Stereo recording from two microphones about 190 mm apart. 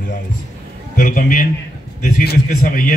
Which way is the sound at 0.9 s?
45° left (ahead or behind).